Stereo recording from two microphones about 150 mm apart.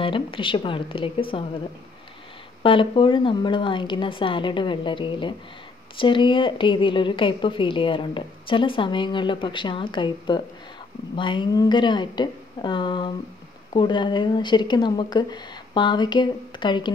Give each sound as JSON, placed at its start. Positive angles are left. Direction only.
{"t": 0.0, "sound": "a woman's voice", "side_deg": 35}
{"t": 2.6, "sound": "a woman's voice", "side_deg": 35}